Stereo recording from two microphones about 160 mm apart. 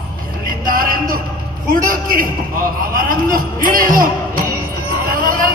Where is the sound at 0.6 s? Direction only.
60° right (ahead or behind).